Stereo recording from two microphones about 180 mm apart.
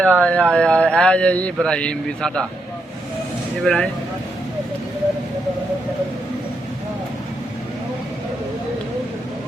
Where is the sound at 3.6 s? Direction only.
5° left (ahead or behind).